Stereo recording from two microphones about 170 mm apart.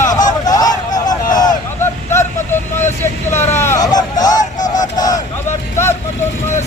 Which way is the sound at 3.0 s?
15° left (ahead or behind).